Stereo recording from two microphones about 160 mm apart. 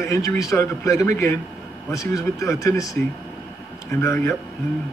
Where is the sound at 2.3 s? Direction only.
20° left (ahead or behind).